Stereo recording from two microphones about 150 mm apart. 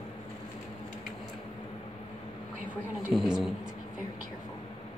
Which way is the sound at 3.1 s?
5° right (ahead or behind).